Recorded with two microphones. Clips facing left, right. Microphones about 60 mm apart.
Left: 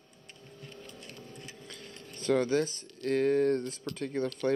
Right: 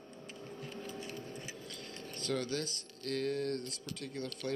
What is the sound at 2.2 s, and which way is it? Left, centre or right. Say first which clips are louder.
Speech: left 9 dB; left.